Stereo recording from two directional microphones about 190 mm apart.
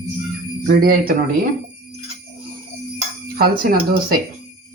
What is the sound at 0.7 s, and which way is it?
Speech, 50° right (ahead or behind).